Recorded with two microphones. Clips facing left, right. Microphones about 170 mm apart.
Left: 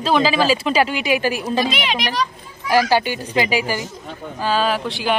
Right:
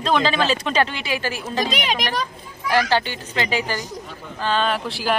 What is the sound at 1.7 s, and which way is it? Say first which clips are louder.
Speech: left 1 dB; 45° right (ahead or behind).